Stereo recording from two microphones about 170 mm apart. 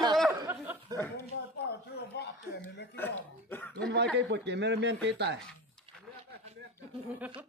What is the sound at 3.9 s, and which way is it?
Speech, 90° right.